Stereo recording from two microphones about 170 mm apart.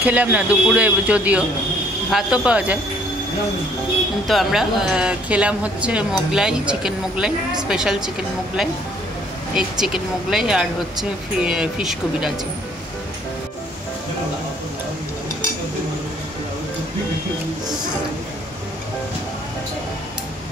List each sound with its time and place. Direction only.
0.0 s speech: 10° right (ahead or behind)
4.3 s speech: centre (ahead or behind)
9.6 s speech: 5° right (ahead or behind)